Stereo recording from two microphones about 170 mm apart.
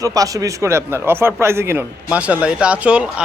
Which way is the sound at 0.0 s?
20° right (ahead or behind).